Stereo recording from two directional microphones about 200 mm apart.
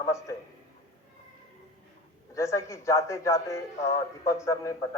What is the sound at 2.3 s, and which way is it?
A man's voice, 15° left (ahead or behind).